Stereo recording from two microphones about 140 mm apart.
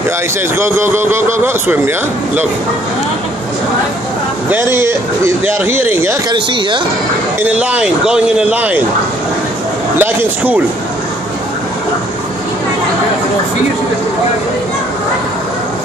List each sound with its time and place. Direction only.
0.6 s speech: 15° right (ahead or behind)
4.5 s speech: 15° right (ahead or behind)
6.3 s speech: 35° right (ahead or behind)
7.4 s speech: 10° right (ahead or behind)
9.9 s speech: 15° right (ahead or behind)